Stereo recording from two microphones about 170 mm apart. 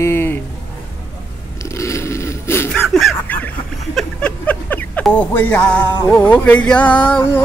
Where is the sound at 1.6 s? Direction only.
15° left (ahead or behind).